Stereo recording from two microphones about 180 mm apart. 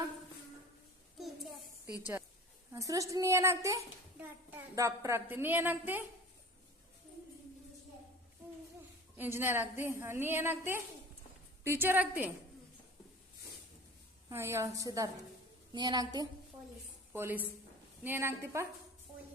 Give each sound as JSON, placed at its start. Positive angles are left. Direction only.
{"t": 2.7, "sound": "a child's voice", "side_deg": -20}
{"t": 9.1, "sound": "a child's voice", "side_deg": -10}
{"t": 14.3, "sound": "a child's voice", "side_deg": -15}
{"t": 17.1, "sound": "a woman's voice", "side_deg": -10}